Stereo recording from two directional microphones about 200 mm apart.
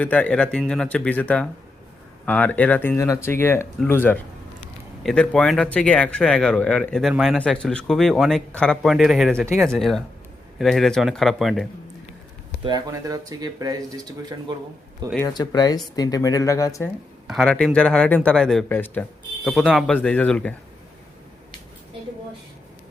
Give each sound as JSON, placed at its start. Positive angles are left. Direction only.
{"t": 0.0, "sound": "speech", "side_deg": 5}
{"t": 12.6, "sound": "speech", "side_deg": -20}
{"t": 15.3, "sound": "speech", "side_deg": 20}
{"t": 17.2, "sound": "speech", "side_deg": 0}